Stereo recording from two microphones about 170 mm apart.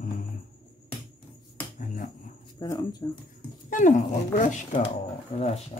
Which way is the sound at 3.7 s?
50° left (ahead or behind).